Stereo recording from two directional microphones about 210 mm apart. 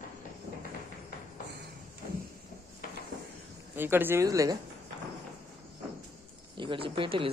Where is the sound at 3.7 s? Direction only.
10° right (ahead or behind).